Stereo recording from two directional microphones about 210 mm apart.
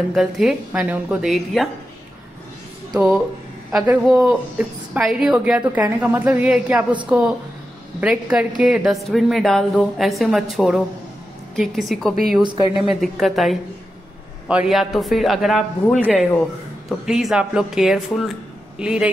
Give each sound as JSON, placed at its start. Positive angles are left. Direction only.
{"t": 0.1, "sound": "a woman's voice", "side_deg": 0}
{"t": 2.9, "sound": "a woman's voice", "side_deg": 0}
{"t": 12.4, "sound": "speech", "side_deg": -15}
{"t": 12.7, "sound": "a woman's voice", "side_deg": 0}